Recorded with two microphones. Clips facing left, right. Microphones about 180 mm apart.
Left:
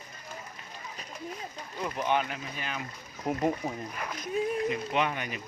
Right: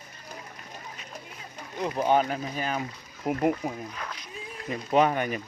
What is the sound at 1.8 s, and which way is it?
Speech, 30° right (ahead or behind).